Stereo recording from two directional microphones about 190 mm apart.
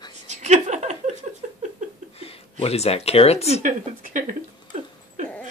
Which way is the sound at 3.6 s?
40° right (ahead or behind).